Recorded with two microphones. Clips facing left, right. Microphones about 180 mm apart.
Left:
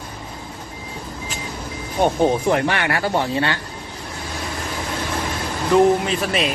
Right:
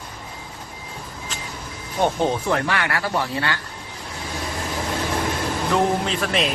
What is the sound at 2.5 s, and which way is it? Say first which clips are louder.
Speech: left 3 dB; 20° left (ahead or behind).